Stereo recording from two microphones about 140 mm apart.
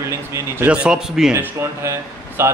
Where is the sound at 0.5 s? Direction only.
10° right (ahead or behind).